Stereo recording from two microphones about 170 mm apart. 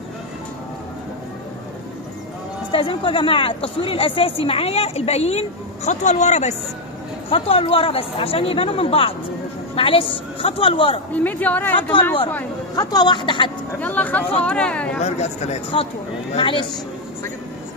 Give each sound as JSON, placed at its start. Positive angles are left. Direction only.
{"t": 2.7, "sound": "a woman's voice", "side_deg": 30}
{"t": 11.2, "sound": "speech", "side_deg": 10}
{"t": 12.9, "sound": "speech", "side_deg": 25}
{"t": 13.7, "sound": "speech", "side_deg": 10}
{"t": 15.0, "sound": "a woman's voice", "side_deg": 40}